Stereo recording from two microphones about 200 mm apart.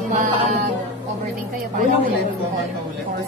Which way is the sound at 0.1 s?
35° right (ahead or behind).